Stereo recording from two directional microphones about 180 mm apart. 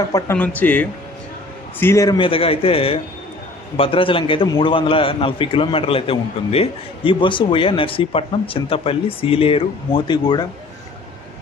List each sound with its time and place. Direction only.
0.1 s speech: 10° left (ahead or behind)
2.1 s a man's voice: 30° left (ahead or behind)